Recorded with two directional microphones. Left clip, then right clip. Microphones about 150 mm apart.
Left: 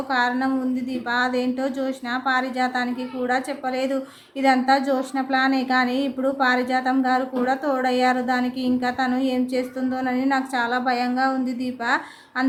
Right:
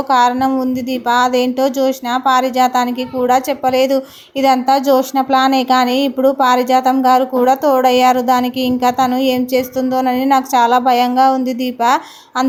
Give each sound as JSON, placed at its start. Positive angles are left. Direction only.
{"t": 0.1, "sound": "speech", "side_deg": -30}